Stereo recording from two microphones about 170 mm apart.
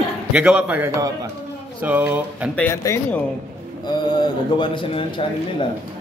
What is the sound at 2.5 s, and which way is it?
Speech, 10° left (ahead or behind).